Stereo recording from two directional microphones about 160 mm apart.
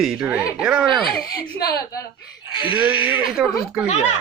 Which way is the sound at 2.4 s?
30° left (ahead or behind).